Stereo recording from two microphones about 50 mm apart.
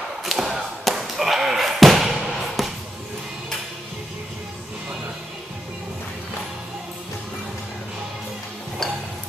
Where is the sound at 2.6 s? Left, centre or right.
Centre.